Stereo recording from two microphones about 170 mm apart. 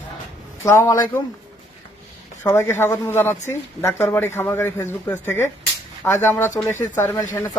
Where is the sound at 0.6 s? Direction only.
15° left (ahead or behind).